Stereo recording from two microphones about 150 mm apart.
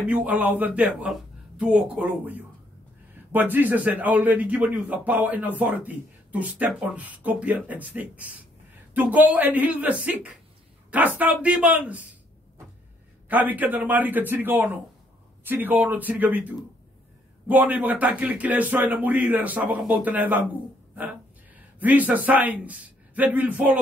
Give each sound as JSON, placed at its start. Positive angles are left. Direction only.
{"t": 0.0, "sound": "speech", "side_deg": -10}
{"t": 13.3, "sound": "speech", "side_deg": -10}
{"t": 20.9, "sound": "a sound", "side_deg": -10}
{"t": 21.7, "sound": "speech", "side_deg": -10}